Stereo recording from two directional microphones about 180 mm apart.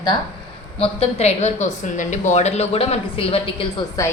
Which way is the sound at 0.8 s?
35° left (ahead or behind).